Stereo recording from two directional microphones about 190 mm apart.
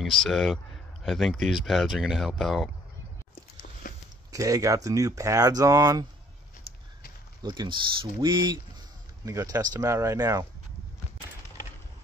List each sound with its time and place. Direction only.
0.2 s speech: centre (ahead or behind)
3.8 s a sound: 45° left (ahead or behind)
4.3 s speech: 15° right (ahead or behind)
7.4 s speech: 25° right (ahead or behind)